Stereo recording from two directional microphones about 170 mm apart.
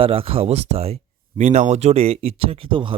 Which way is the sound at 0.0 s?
35° right (ahead or behind).